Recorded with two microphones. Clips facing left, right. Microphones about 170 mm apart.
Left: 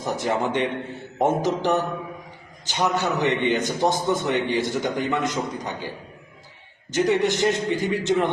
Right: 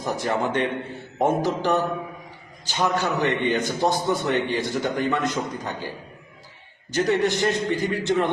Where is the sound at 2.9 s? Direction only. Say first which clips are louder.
Left 1 dB; 15° left (ahead or behind).